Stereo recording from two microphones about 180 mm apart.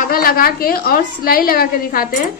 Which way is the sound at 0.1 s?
55° left (ahead or behind).